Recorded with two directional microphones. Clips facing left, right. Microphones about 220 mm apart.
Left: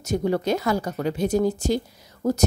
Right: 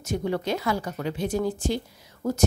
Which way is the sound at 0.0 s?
40° left (ahead or behind).